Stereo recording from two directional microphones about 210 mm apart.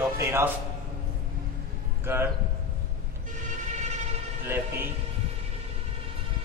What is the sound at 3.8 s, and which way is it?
Vehicle, 35° right (ahead or behind).